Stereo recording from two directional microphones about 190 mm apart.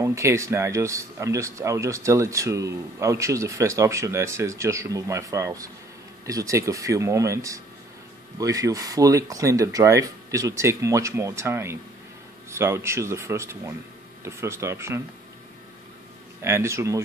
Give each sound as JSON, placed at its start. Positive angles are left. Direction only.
{"t": 0.0, "sound": "speech", "side_deg": -15}
{"t": 16.4, "sound": "speech", "side_deg": -15}